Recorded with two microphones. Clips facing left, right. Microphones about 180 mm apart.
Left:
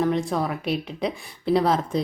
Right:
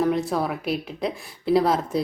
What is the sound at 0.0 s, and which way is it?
A woman's voice, 5° right (ahead or behind).